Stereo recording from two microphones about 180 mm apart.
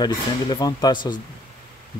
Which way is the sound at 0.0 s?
20° left (ahead or behind).